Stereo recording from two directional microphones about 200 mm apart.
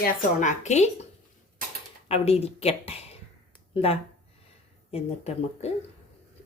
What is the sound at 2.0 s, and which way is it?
A woman's voice, 30° left (ahead or behind).